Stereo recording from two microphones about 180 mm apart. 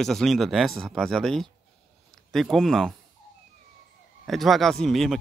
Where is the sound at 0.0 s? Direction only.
Centre (ahead or behind).